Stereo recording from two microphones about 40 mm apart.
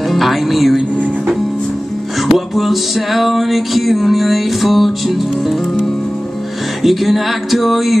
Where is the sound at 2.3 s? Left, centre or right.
Centre.